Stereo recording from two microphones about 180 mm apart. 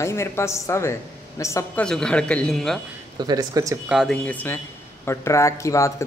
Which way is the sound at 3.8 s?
5° right (ahead or behind).